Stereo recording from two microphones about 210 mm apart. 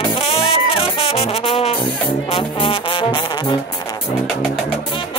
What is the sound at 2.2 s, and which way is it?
Music, 25° left (ahead or behind).